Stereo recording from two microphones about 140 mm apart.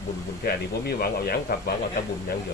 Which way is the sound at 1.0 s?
90° left.